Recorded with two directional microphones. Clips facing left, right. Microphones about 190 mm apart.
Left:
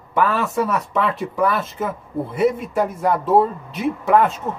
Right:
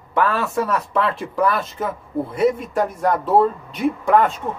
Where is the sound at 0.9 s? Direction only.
Centre (ahead or behind).